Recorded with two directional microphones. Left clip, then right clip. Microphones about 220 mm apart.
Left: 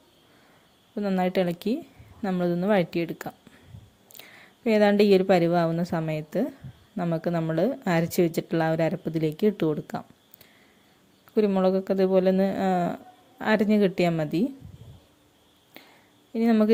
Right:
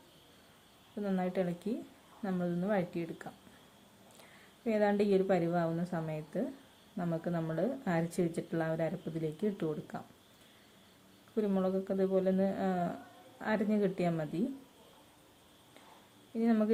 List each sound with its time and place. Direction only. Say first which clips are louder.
0.9 s a woman's voice: left 10 dB; 40° left (ahead or behind)
4.6 s a woman's voice: left 10 dB; 45° left (ahead or behind)
11.3 s a woman's voice: left 11 dB; 40° left (ahead or behind)
16.3 s speech: left 9 dB; 40° left (ahead or behind)